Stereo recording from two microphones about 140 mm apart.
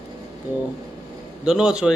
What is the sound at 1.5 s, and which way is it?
Speech, 5° right (ahead or behind).